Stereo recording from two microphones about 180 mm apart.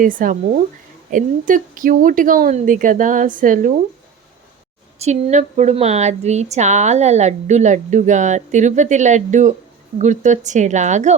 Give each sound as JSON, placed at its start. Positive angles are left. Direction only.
{"t": 0.0, "sound": "a woman's voice", "side_deg": -50}
{"t": 4.9, "sound": "speech", "side_deg": -40}